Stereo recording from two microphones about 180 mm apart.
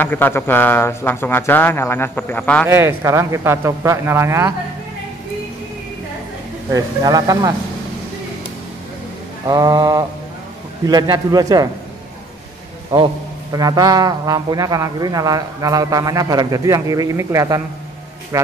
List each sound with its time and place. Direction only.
0.0 s speech: 10° left (ahead or behind)
2.7 s speech: 15° right (ahead or behind)
6.7 s a man's voice: 20° right (ahead or behind)
9.5 s a man's voice: 20° right (ahead or behind)
12.9 s a man's voice: 20° right (ahead or behind)